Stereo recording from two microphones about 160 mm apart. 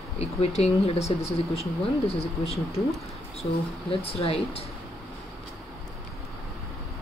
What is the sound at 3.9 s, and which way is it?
Speech, 35° left (ahead or behind).